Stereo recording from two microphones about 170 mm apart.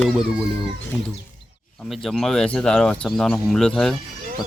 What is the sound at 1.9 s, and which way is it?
A man's voice, centre (ahead or behind).